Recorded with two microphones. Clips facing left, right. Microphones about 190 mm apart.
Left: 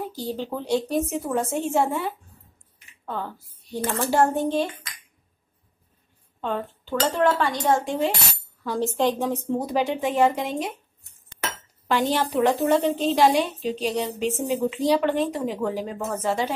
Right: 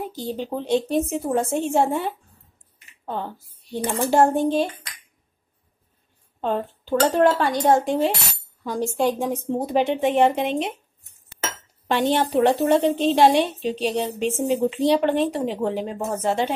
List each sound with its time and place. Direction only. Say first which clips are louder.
0.0 s a woman's voice: right 1 dB; 20° right (ahead or behind)
3.7 s a woman's voice: right 3 dB; 15° right (ahead or behind)
6.4 s speech: right 4 dB; 35° right (ahead or behind)
8.6 s speech: right 1 dB; 15° right (ahead or behind)
9.5 s a woman's voice: right 4 dB; 25° right (ahead or behind)
11.9 s a woman's voice: right 3 dB; 25° right (ahead or behind)